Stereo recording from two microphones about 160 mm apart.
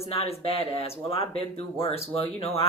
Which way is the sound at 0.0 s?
40° left (ahead or behind).